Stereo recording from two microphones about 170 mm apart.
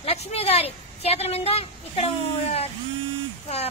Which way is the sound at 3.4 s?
40° left (ahead or behind).